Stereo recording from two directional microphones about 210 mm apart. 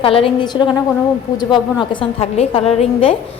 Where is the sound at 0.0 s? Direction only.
25° left (ahead or behind).